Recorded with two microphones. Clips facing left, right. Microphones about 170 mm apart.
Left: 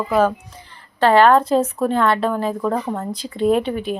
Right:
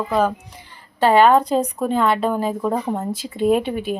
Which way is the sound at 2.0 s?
10° right (ahead or behind).